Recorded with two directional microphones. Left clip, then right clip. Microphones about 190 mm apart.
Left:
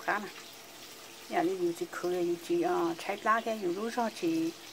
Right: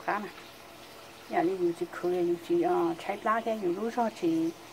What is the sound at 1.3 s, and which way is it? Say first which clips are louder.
Speech: right 2 dB; 15° left (ahead or behind).